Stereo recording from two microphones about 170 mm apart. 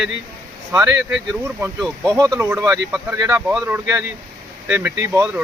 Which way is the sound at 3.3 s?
5° right (ahead or behind).